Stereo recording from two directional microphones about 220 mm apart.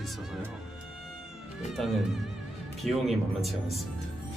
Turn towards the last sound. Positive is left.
turn(degrees=0)  # may be behind; listen again after turning